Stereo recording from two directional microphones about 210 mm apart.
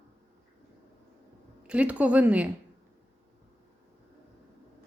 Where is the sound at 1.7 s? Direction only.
5° right (ahead or behind).